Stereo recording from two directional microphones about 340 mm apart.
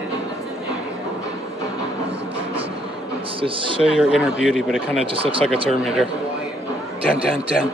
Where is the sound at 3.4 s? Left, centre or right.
Centre.